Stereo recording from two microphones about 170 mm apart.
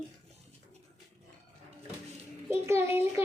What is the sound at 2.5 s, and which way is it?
Speech, 15° right (ahead or behind).